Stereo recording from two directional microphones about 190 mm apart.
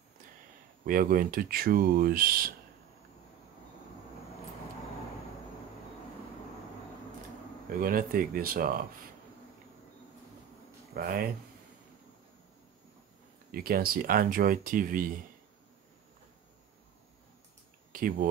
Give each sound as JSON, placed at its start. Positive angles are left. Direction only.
{"t": 0.8, "sound": "speech", "side_deg": -45}
{"t": 7.7, "sound": "speech", "side_deg": -50}
{"t": 11.0, "sound": "speech", "side_deg": -50}
{"t": 13.5, "sound": "speech", "side_deg": -50}
{"t": 17.9, "sound": "speech", "side_deg": -50}